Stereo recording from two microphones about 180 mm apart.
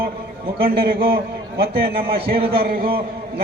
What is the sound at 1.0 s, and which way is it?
A man's voice, 60° right (ahead or behind).